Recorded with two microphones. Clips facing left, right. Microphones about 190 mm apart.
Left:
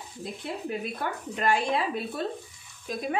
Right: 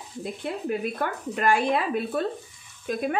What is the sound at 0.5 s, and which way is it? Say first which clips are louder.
Speech: right 4 dB; 55° right (ahead or behind).